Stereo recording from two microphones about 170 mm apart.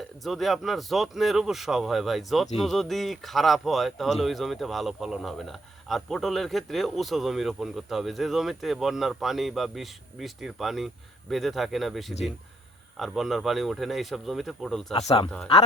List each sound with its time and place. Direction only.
0.2 s speech: centre (ahead or behind)
14.9 s speech: 25° left (ahead or behind)